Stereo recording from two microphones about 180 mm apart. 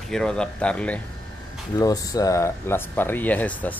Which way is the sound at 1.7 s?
20° left (ahead or behind).